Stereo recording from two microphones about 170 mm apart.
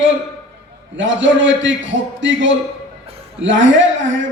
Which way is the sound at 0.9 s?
90° right.